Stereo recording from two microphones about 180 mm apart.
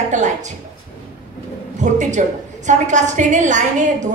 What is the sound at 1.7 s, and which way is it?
A woman's voice, 40° right (ahead or behind).